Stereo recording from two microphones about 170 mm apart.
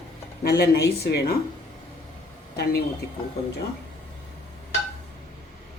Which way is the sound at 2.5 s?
70° left (ahead or behind).